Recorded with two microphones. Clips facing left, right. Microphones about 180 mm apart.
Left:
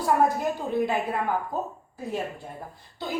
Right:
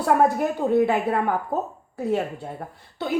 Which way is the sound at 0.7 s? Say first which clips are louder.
Right 7 dB; 60° right (ahead or behind).